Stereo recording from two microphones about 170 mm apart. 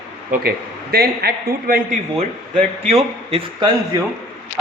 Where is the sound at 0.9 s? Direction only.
65° right (ahead or behind).